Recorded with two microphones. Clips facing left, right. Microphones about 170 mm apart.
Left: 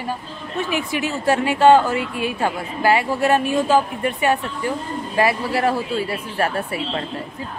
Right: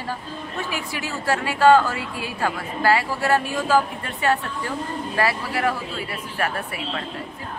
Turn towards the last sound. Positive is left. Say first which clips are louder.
# left 4 dB
turn(degrees=30)  # may be behind; listen again after turning